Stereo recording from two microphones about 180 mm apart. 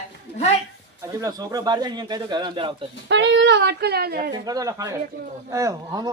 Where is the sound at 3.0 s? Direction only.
80° right; by 4.3 s 55° right (ahead or behind).